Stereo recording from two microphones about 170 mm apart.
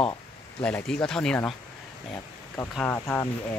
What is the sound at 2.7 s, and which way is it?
Speech, 5° left (ahead or behind).